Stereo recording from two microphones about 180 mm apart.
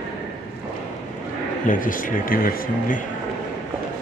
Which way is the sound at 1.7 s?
50° left (ahead or behind).